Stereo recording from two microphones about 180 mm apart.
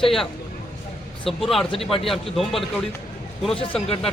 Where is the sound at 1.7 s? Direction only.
30° left (ahead or behind).